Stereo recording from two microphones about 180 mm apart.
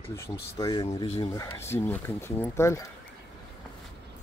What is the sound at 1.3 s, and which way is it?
Speech, 15° left (ahead or behind).